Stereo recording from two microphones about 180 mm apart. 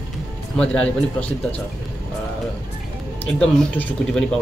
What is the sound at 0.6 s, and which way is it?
Speech, 5° left (ahead or behind).